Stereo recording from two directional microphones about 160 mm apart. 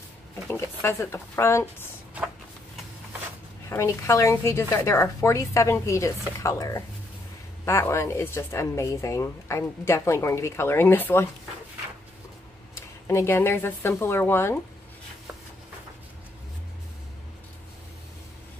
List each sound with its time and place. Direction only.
0.5 s speech: 15° left (ahead or behind)
3.6 s speech: 20° left (ahead or behind)
13.0 s speech: 15° left (ahead or behind)